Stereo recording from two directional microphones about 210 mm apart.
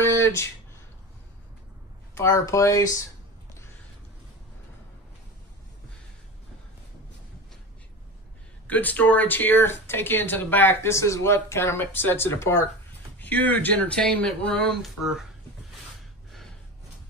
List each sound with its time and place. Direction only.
0.0 s a sound: 10° left (ahead or behind)
2.1 s speech: 15° left (ahead or behind)
8.6 s speech: 10° left (ahead or behind)